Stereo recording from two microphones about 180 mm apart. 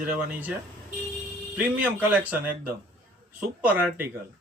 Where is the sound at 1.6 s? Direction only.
10° right (ahead or behind).